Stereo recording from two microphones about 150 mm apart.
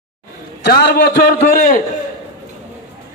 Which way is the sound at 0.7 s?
90° left.